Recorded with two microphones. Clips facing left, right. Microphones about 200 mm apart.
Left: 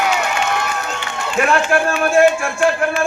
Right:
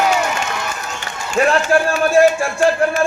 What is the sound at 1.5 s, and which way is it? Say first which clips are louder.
Music: right 1 dB; 35° right (ahead or behind).